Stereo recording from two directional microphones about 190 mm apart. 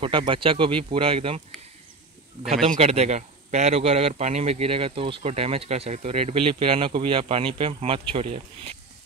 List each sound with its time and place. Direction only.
0.0 s speech: 25° right (ahead or behind)
2.5 s a man's voice: 35° right (ahead or behind)